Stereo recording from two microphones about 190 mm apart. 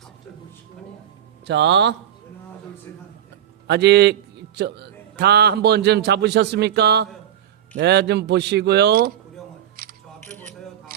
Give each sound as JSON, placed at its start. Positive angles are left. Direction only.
{"t": 1.5, "sound": "speech", "side_deg": -70}
{"t": 3.7, "sound": "a man's voice", "side_deg": -60}
{"t": 9.8, "sound": "single-lens reflex camera", "side_deg": -50}
{"t": 10.2, "sound": "scissors", "side_deg": 10}